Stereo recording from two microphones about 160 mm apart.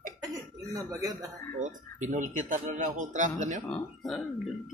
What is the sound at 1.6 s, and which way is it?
A man's voice, 50° right (ahead or behind).